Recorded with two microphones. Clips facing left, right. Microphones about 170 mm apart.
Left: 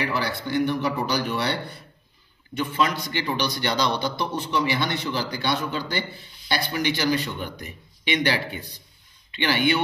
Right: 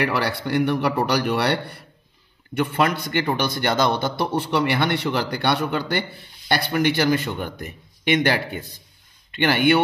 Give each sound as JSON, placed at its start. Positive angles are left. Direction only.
{"t": 0.0, "sound": "a man's voice", "side_deg": -65}